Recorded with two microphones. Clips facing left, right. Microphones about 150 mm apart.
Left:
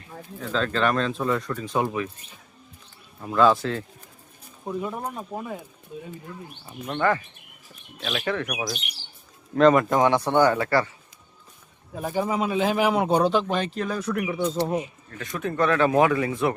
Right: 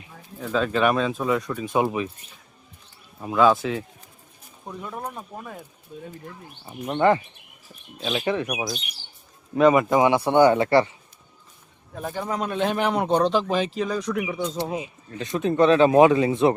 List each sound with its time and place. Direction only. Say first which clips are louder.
0.0 s speech: even; 10° right (ahead or behind)
1.5 s speech: right 3 dB; 15° right (ahead or behind)
3.3 s speech: right 1 dB; centre (ahead or behind)
4.6 s speech: left 4 dB; 5° left (ahead or behind)
6.7 s speech: right 4 dB; 20° right (ahead or behind)
9.6 s speech: even; 5° right (ahead or behind); by 10.9 s 20° right (ahead or behind)
11.9 s speech: left 3 dB; 5° left (ahead or behind)
14.6 s speech: left 3 dB; 15° right (ahead or behind)